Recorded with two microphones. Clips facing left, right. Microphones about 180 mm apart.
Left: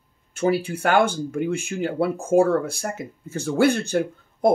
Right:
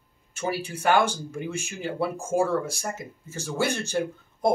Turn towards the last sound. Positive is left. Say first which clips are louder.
# left 4 dB
turn(degrees=60)  # may be behind; listen again after turning